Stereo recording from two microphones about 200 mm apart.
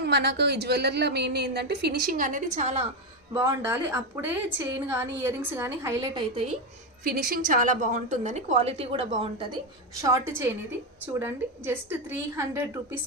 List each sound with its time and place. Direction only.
0.0 s a woman's voice: 60° right (ahead or behind); by 2.8 s 35° right (ahead or behind)
3.3 s a woman's voice: 10° right (ahead or behind)
7.0 s a woman's voice: 45° right (ahead or behind); by 9.6 s 25° right (ahead or behind)
10.0 s a woman's voice: 15° right (ahead or behind)